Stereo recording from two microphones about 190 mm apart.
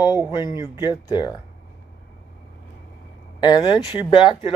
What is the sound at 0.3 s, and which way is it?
Speech, 20° left (ahead or behind).